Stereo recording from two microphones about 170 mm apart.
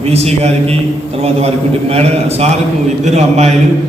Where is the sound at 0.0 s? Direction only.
35° right (ahead or behind).